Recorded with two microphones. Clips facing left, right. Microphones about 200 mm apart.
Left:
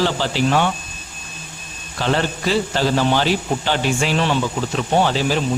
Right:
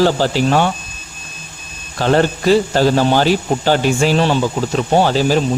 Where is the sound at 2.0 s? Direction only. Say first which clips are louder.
Right 6 dB; 45° right (ahead or behind).